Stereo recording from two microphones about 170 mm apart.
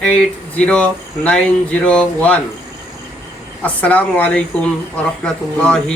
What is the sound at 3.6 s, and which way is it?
Speech, 10° left (ahead or behind).